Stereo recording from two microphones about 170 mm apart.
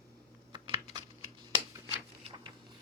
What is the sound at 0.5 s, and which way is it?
Computer keyboard, 30° right (ahead or behind).